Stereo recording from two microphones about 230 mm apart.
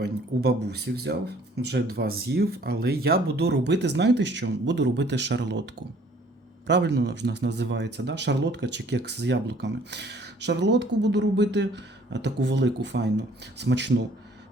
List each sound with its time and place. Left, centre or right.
0.0 s speech: right